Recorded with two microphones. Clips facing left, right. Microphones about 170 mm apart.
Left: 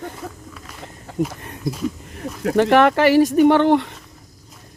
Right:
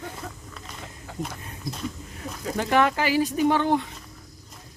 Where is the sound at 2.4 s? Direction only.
70° left (ahead or behind).